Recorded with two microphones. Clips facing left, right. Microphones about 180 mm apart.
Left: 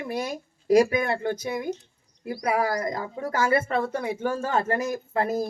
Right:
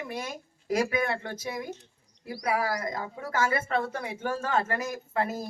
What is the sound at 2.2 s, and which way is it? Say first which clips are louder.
A woman's voice: left 4 dB; 50° left (ahead or behind).